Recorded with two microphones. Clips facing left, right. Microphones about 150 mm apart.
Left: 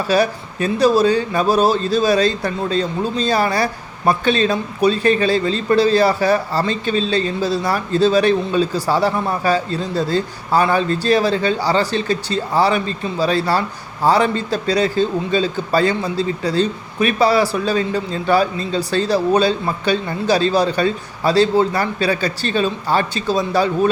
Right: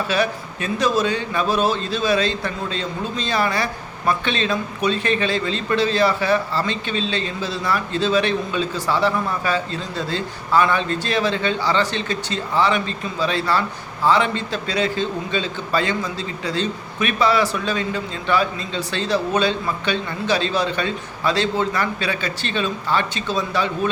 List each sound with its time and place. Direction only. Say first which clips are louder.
0.1 s speech: left 5 dB; 35° left (ahead or behind)